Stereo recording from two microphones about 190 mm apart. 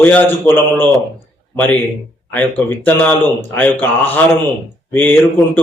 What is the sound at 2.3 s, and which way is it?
Speech, 10° left (ahead or behind).